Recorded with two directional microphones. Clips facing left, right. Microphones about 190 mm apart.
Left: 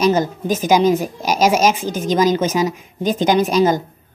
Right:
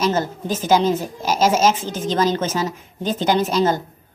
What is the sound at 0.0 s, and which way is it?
A woman's voice, 15° left (ahead or behind).